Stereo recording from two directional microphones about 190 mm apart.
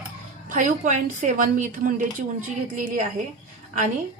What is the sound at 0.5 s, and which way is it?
A woman's voice, 40° right (ahead or behind).